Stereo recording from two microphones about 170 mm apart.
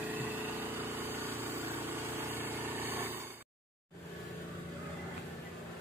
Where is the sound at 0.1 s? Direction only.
10° right (ahead or behind).